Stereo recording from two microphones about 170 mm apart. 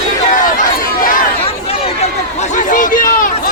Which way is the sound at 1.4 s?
35° left (ahead or behind).